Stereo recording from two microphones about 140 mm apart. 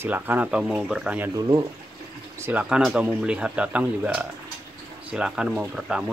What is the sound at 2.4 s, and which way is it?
Speech, 10° right (ahead or behind).